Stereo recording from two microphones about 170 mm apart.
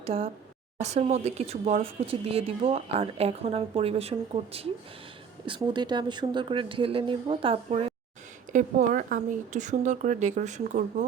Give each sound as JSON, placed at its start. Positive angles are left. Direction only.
{"t": 0.0, "sound": "a woman's voice", "side_deg": -35}
{"t": 8.5, "sound": "speech", "side_deg": -50}